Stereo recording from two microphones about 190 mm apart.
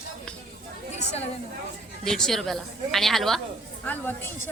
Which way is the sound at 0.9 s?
35° left (ahead or behind).